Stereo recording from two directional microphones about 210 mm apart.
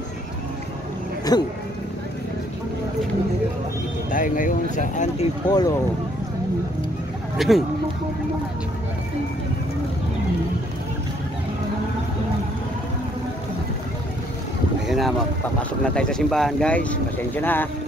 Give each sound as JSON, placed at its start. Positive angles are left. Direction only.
{"t": 1.3, "sound": "speech", "side_deg": 20}
{"t": 4.1, "sound": "speech", "side_deg": 40}
{"t": 5.5, "sound": "speech", "side_deg": 20}
{"t": 7.3, "sound": "speech", "side_deg": 0}
{"t": 14.9, "sound": "speech", "side_deg": 0}